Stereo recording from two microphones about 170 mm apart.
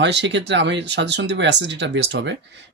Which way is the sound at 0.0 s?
90° right.